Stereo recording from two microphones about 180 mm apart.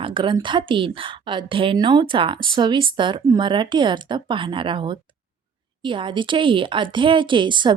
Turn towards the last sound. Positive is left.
turn(degrees=-25)  # may be behind; listen again after turning